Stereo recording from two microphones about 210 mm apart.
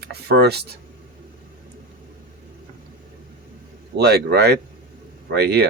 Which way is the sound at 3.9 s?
50° right (ahead or behind).